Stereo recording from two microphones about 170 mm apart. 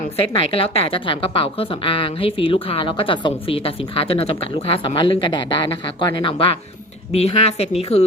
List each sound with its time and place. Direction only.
0.3 s a woman's voice: 35° left (ahead or behind)